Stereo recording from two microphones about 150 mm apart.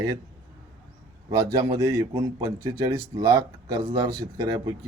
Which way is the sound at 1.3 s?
25° right (ahead or behind).